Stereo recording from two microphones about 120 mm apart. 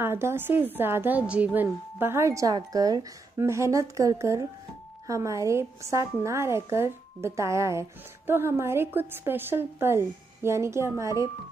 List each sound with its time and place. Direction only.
0.0 s a woman's voice: 20° right (ahead or behind)